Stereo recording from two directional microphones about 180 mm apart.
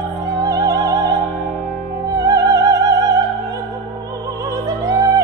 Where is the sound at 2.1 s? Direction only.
20° right (ahead or behind).